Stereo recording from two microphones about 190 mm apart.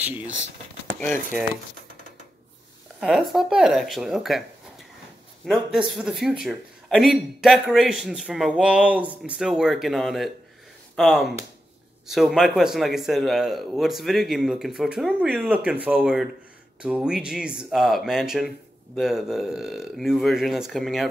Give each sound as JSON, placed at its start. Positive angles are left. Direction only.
{"t": 0.9, "sound": "speech", "side_deg": 0}
{"t": 3.0, "sound": "speech", "side_deg": 0}